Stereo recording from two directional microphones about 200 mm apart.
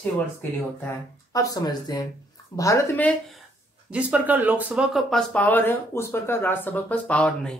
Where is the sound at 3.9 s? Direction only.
5° right (ahead or behind).